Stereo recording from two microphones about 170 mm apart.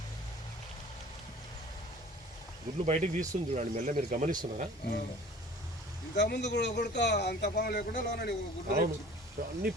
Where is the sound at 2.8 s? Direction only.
40° right (ahead or behind).